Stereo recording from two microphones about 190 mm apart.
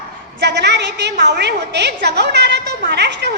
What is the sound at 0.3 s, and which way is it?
A woman's voice, 60° right (ahead or behind).